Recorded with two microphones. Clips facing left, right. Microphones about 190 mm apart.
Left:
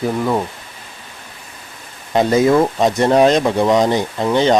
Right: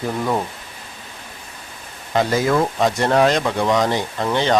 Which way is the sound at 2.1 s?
20° left (ahead or behind).